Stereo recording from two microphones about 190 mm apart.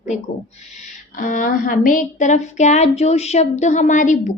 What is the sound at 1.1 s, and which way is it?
A woman's voice, 45° left (ahead or behind).